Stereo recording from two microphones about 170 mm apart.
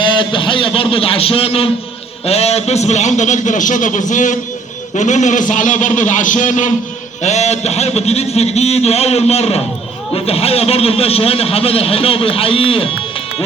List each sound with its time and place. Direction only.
0.0 s a man's voice: 30° left (ahead or behind)